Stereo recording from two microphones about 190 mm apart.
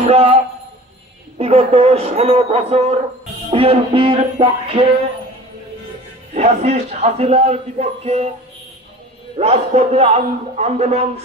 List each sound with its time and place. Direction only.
0.1 s a man's voice: 30° right (ahead or behind)
1.4 s a man's voice: 30° right (ahead or behind)
3.4 s music: 30° right (ahead or behind)
6.3 s a man's voice: 35° right (ahead or behind)
9.4 s a man's voice: 35° right (ahead or behind)